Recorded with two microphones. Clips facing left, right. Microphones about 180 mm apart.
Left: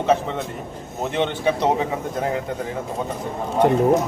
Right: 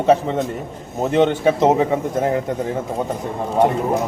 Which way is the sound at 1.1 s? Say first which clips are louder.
Right 6 dB; 45° right (ahead or behind).